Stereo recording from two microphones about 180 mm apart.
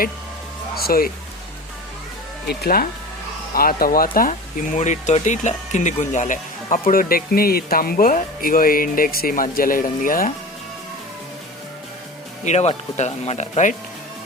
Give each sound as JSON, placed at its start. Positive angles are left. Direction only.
{"t": 0.8, "sound": "speech", "side_deg": 55}
{"t": 2.5, "sound": "speech", "side_deg": 55}
{"t": 12.5, "sound": "speech", "side_deg": 40}